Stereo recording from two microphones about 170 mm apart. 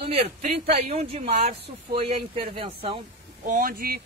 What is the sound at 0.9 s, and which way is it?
Speech, 40° right (ahead or behind).